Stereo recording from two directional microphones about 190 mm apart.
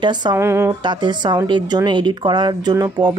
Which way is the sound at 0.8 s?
25° right (ahead or behind).